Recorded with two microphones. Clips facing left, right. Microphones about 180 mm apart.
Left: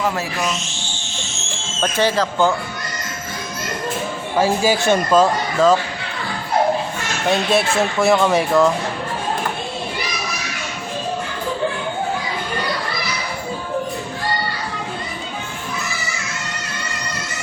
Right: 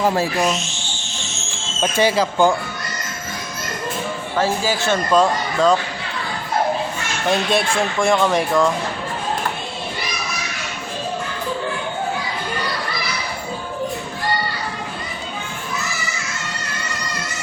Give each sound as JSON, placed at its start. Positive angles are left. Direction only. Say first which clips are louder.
{"t": 0.0, "sound": "speech", "louder": "right 4 dB", "side_deg": -35}
{"t": 1.8, "sound": "speech", "louder": "right 1 dB", "side_deg": -10}
{"t": 4.4, "sound": "a man's voice", "louder": "left 4 dB", "side_deg": 15}
{"t": 5.1, "sound": "speech", "louder": "right 1 dB", "side_deg": 5}
{"t": 7.3, "sound": "speech", "louder": "left 1 dB", "side_deg": 5}